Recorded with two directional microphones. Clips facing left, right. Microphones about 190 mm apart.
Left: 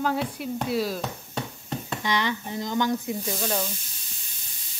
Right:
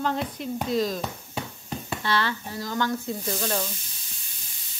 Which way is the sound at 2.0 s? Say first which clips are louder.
Even; 15° left (ahead or behind).